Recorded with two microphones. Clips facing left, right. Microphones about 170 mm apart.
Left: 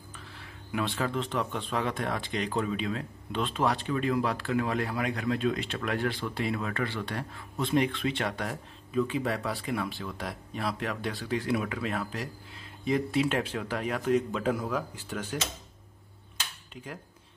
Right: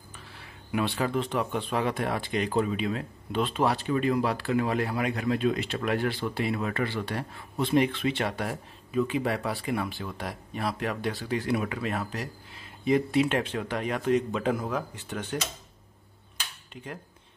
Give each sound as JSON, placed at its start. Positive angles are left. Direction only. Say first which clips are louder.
{"t": 0.7, "sound": "speech", "louder": "right 3 dB", "side_deg": -5}
{"t": 15.0, "sound": "speech", "louder": "right 1 dB", "side_deg": 10}